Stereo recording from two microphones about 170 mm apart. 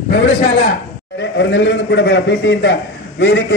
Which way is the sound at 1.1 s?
90° left.